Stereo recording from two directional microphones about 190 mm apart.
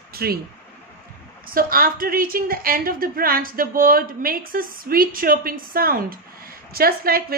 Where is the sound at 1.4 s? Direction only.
50° right (ahead or behind).